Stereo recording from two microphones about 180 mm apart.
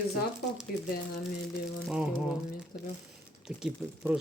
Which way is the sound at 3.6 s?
5° right (ahead or behind).